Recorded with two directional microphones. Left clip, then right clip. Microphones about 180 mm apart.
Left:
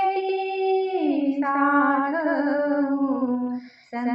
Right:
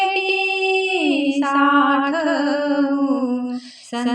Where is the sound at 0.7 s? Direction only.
20° right (ahead or behind).